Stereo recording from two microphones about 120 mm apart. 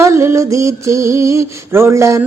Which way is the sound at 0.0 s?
25° right (ahead or behind).